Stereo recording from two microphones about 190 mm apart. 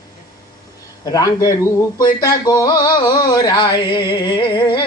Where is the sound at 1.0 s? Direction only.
20° left (ahead or behind).